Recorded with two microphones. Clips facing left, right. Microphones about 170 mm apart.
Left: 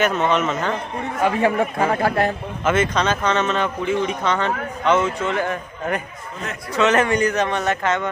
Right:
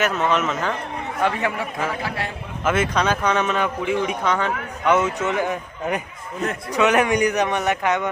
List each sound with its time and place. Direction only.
0.0 s speech: 5° right (ahead or behind)
1.5 s speech: 55° left (ahead or behind)
2.6 s speech: 10° right (ahead or behind)
4.9 s speech: 15° right (ahead or behind)